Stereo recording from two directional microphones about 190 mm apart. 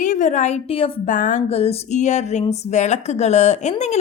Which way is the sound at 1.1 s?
40° left (ahead or behind).